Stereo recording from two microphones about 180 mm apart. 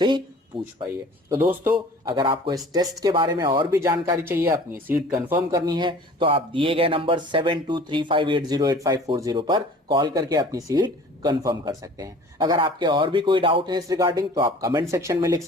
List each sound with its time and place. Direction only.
0.0 s a sound: 25° right (ahead or behind)
1.3 s speech: 10° right (ahead or behind)
2.0 s speech: 30° right (ahead or behind)
3.7 s speech: 15° right (ahead or behind)